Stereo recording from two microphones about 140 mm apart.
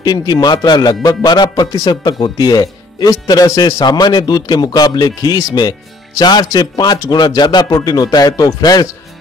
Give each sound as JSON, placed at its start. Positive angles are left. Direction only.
{"t": 0.0, "sound": "speech", "side_deg": 30}